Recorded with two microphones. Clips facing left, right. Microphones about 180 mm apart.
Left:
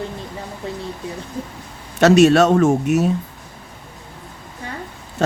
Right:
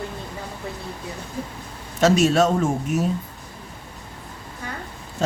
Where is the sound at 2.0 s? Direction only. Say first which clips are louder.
Left 6 dB; 70° left (ahead or behind).